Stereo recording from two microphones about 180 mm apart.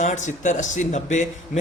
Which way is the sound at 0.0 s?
40° left (ahead or behind).